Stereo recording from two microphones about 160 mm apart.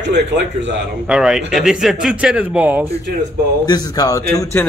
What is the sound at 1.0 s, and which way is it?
Speech, 5° right (ahead or behind).